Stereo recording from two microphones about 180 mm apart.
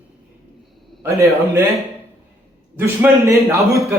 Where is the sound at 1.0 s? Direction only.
15° right (ahead or behind).